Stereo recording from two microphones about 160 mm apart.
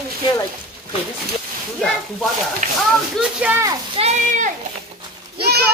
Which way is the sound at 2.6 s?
55° right (ahead or behind).